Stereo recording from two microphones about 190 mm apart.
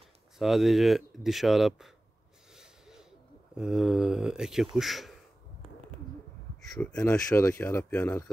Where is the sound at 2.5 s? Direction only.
Centre (ahead or behind).